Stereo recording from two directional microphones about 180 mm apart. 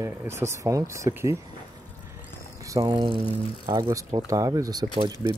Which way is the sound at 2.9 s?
30° right (ahead or behind).